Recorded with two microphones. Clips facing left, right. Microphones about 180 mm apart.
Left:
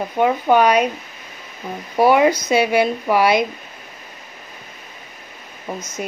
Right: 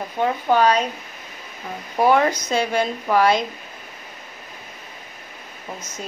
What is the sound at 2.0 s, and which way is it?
A woman's voice, 10° left (ahead or behind).